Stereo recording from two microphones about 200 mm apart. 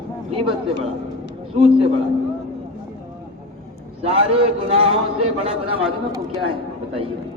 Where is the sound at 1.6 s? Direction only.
30° right (ahead or behind).